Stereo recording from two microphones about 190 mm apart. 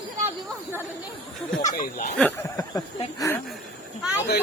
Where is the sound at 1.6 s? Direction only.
40° left (ahead or behind).